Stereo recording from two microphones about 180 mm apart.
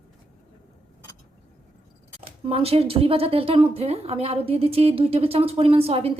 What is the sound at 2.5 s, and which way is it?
A woman's voice, 30° right (ahead or behind).